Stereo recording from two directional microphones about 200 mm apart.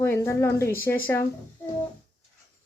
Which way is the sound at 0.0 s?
10° left (ahead or behind).